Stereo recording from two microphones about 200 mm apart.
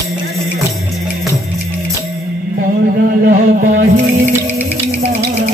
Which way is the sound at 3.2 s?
45° right (ahead or behind).